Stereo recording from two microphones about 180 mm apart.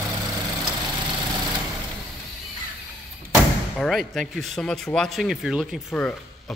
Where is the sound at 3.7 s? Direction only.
Centre (ahead or behind).